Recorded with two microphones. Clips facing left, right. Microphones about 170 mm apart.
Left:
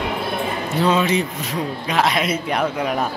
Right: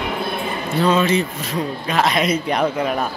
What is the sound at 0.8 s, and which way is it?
A man's voice, 15° left (ahead or behind).